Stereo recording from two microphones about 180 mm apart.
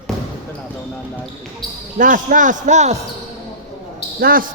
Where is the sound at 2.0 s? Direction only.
45° right (ahead or behind).